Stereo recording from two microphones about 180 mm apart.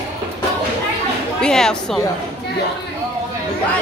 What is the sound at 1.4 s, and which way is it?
Speech, 5° left (ahead or behind).